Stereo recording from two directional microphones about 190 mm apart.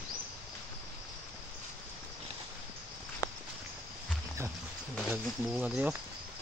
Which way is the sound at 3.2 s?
20° left (ahead or behind).